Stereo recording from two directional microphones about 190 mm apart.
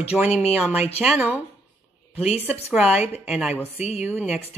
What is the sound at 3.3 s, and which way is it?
Speech, 5° right (ahead or behind).